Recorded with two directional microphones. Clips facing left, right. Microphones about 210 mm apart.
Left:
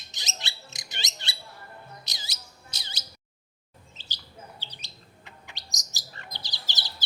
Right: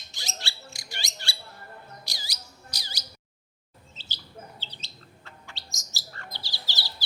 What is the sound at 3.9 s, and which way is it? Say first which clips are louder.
Bird: right 3 dB; 15° left (ahead or behind).